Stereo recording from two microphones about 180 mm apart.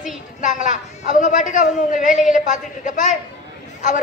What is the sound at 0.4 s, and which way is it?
A woman's voice, 45° left (ahead or behind).